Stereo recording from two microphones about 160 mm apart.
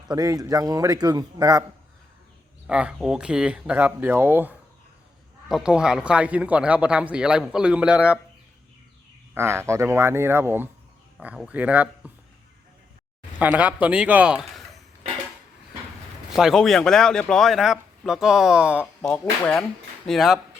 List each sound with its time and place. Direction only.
0.1 s a man's voice: 25° right (ahead or behind)
2.6 s a man's voice: 5° right (ahead or behind)
9.3 s a man's voice: 15° right (ahead or behind)
13.4 s a man's voice: 10° right (ahead or behind)
16.3 s speech: centre (ahead or behind)
19.2 s speech: 10° left (ahead or behind)